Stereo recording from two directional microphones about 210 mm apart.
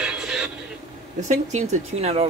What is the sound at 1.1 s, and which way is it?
Speech, 35° right (ahead or behind).